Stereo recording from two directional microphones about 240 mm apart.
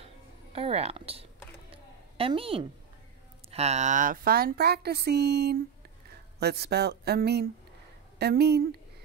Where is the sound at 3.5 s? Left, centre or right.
Right.